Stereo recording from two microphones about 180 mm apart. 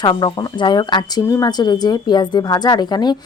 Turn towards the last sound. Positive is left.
turn(degrees=25)  # may be behind; listen again after turning